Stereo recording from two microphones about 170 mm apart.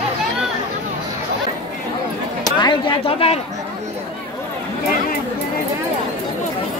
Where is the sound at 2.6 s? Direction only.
30° left (ahead or behind).